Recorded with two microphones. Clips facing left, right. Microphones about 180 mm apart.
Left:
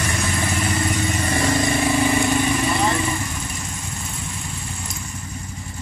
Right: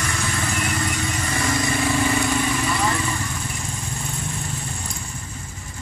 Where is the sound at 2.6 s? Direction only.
25° left (ahead or behind).